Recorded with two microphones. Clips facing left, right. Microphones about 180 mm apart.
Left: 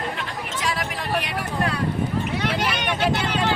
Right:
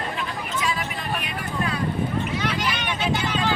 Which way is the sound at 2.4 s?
65° left (ahead or behind).